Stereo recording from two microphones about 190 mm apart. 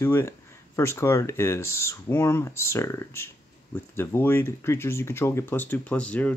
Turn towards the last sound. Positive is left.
turn(degrees=5)  # may be behind; listen again after turning